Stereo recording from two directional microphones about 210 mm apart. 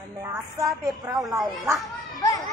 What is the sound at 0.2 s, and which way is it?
Speech, 15° right (ahead or behind).